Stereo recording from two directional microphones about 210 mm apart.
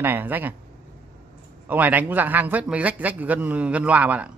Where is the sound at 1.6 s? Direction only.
10° right (ahead or behind).